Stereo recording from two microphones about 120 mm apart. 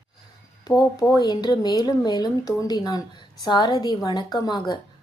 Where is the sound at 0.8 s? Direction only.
30° left (ahead or behind).